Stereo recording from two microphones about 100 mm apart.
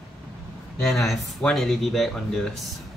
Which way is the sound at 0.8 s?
5° left (ahead or behind).